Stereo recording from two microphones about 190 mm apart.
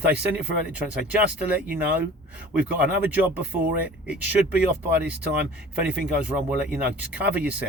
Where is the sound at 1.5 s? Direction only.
5° right (ahead or behind).